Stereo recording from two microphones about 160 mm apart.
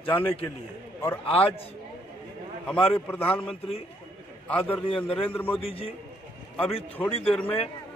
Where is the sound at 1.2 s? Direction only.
40° left (ahead or behind).